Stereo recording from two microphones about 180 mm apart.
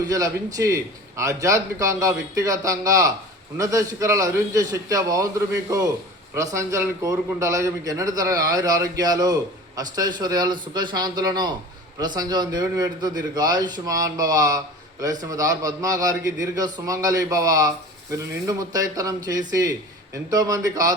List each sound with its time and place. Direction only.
0.0 s a man's voice: 20° right (ahead or behind)
6.3 s a man's voice: 15° right (ahead or behind)